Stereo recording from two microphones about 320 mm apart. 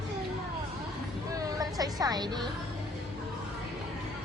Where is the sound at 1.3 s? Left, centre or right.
Centre.